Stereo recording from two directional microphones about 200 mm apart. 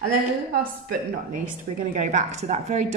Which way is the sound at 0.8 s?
40° right (ahead or behind).